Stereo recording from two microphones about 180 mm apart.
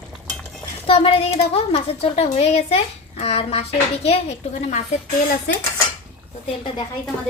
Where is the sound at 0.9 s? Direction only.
30° left (ahead or behind).